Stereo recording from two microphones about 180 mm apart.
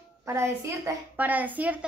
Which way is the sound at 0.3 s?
15° right (ahead or behind).